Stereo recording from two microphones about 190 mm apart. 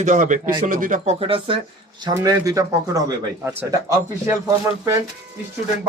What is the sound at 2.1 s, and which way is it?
A man's voice, 15° right (ahead or behind).